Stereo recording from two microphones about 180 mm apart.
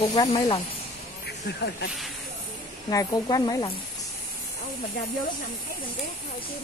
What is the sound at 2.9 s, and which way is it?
Speech, 20° left (ahead or behind).